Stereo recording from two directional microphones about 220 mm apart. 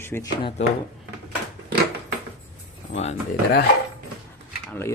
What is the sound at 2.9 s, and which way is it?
Speech, 30° left (ahead or behind).